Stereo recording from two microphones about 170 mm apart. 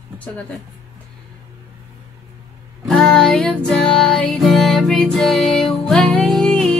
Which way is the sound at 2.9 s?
5° left (ahead or behind).